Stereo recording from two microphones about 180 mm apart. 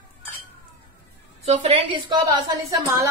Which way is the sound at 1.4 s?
35° right (ahead or behind).